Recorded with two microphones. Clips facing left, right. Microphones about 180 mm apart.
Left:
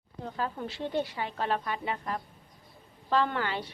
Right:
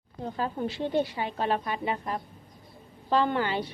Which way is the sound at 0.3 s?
20° right (ahead or behind).